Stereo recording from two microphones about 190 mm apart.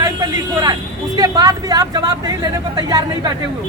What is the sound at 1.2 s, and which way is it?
A woman's voice, 20° right (ahead or behind).